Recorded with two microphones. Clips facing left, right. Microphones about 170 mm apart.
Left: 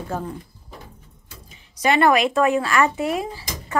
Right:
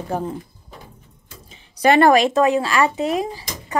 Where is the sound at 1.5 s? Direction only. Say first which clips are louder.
Right 5 dB; 35° right (ahead or behind).